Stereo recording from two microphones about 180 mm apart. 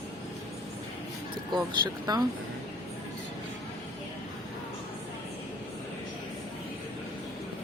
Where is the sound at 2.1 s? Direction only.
20° right (ahead or behind).